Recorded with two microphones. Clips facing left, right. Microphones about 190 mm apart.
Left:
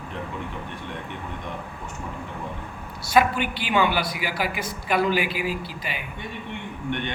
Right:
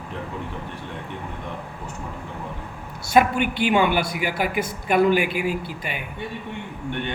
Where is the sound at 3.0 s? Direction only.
50° right (ahead or behind).